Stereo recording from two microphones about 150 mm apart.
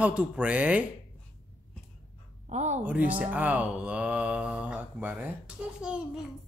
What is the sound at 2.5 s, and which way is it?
Speech, 50° right (ahead or behind).